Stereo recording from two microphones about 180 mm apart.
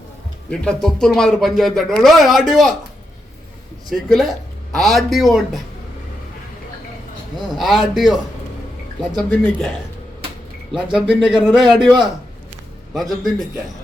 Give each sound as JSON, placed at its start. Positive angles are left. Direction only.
{"t": 0.6, "sound": "speech", "side_deg": 5}
{"t": 3.8, "sound": "speech", "side_deg": 0}
{"t": 7.5, "sound": "speech", "side_deg": 0}
{"t": 10.9, "sound": "speech", "side_deg": -5}
{"t": 12.9, "sound": "speech", "side_deg": 0}